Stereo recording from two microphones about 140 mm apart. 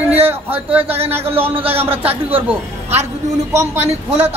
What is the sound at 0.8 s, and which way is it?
Speech, 45° right (ahead or behind).